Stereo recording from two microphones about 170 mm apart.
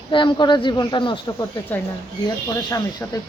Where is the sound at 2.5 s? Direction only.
20° left (ahead or behind).